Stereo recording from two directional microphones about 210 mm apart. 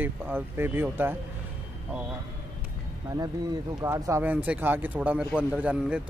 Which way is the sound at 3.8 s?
15° right (ahead or behind).